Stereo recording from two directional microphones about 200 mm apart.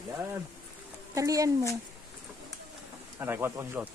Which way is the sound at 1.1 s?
15° right (ahead or behind).